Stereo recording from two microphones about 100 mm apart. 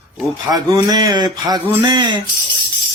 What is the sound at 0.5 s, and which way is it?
Speech, 40° right (ahead or behind).